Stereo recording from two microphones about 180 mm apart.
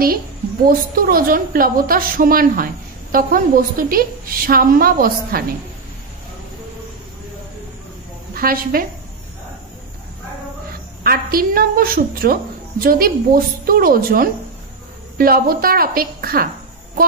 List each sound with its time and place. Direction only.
0.7 s a woman's voice: 55° right (ahead or behind)
8.4 s a woman's voice: 55° right (ahead or behind)
11.1 s a woman's voice: 55° right (ahead or behind)